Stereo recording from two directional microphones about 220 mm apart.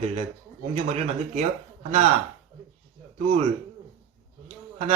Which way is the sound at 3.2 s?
25° right (ahead or behind).